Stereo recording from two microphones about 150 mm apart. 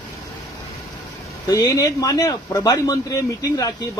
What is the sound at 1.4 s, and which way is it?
A man's voice, 25° left (ahead or behind).